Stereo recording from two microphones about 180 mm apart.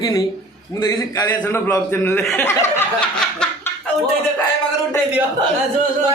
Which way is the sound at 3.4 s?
5° left (ahead or behind).